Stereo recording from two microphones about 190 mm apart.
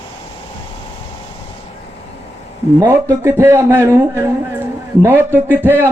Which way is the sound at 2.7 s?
15° right (ahead or behind).